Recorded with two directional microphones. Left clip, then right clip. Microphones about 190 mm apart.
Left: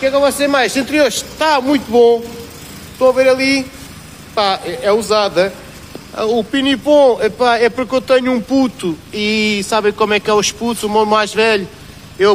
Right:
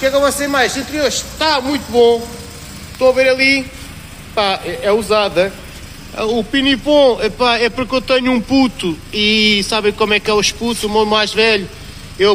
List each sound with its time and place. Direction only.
0.0 s a man's voice: 20° left (ahead or behind)
0.4 s a man's voice: 55° left (ahead or behind)
1.5 s speech: 35° left (ahead or behind)
3.0 s a man's voice: 10° left (ahead or behind)